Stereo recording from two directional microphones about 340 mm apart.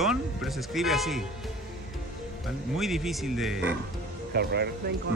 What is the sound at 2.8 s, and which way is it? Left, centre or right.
Speech, centre.